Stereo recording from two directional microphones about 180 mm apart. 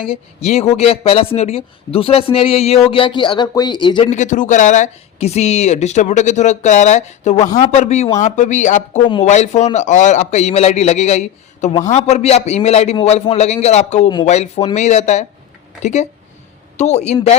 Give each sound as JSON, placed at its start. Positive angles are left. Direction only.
{"t": 0.3, "sound": "speech", "side_deg": 35}
{"t": 4.1, "sound": "a man's voice", "side_deg": 45}